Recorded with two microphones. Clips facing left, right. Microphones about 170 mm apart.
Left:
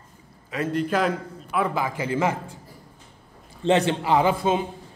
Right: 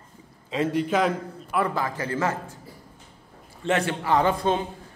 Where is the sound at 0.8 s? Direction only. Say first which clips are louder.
Even; centre (ahead or behind).